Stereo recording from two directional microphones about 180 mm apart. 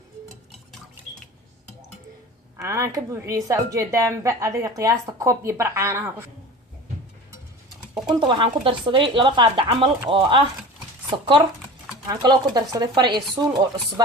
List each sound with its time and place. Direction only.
2.6 s a woman's voice: 15° right (ahead or behind)
8.0 s speech: 25° right (ahead or behind)
12.0 s speech: 20° right (ahead or behind)